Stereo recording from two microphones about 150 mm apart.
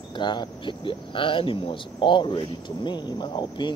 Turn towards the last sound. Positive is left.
turn(degrees=30)  # may be behind; listen again after turning